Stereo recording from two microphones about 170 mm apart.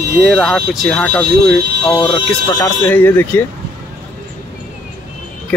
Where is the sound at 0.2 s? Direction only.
Centre (ahead or behind).